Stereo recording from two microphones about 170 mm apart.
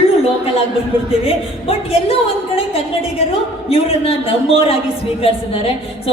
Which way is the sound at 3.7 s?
35° left (ahead or behind).